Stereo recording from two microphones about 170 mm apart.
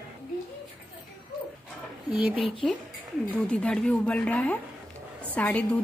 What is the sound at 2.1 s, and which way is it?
Speech, 5° right (ahead or behind).